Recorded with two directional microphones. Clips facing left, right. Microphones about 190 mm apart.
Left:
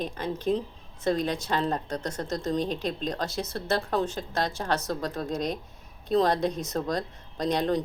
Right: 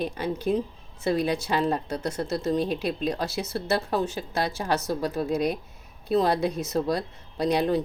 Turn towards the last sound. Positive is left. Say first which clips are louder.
# right 2 dB
turn(degrees=-10)  # may be behind; listen again after turning